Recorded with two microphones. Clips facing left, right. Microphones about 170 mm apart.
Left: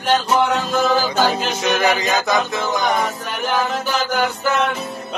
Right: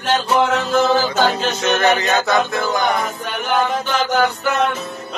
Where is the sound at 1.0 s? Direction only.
10° left (ahead or behind).